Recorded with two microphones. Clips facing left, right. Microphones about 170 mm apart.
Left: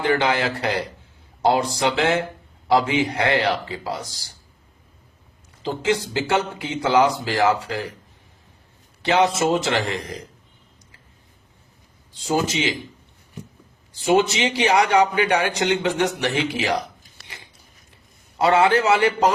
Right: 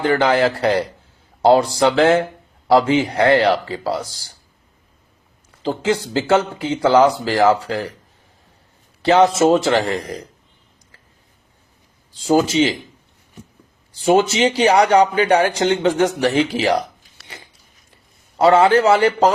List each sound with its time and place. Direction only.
0.0 s speech: 35° right (ahead or behind)
1.8 s speech: 40° right (ahead or behind)
5.6 s speech: 30° right (ahead or behind)
9.0 s speech: 35° right (ahead or behind)
12.2 s speech: 30° right (ahead or behind)
14.0 s speech: 35° right (ahead or behind)
18.3 s speech: 35° right (ahead or behind)